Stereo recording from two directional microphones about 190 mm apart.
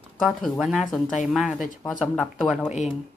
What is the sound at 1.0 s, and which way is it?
Speech, 40° left (ahead or behind).